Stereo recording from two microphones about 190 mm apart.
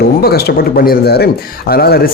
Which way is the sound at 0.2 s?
55° left (ahead or behind).